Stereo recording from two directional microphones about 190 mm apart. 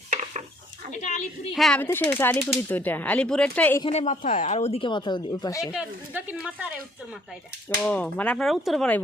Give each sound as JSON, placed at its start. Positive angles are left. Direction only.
{"t": 0.9, "sound": "a sound", "side_deg": 40}
{"t": 1.5, "sound": "speech", "side_deg": 5}
{"t": 3.8, "sound": "speech", "side_deg": 35}
{"t": 5.7, "sound": "speech", "side_deg": -5}
{"t": 7.8, "sound": "speech", "side_deg": 5}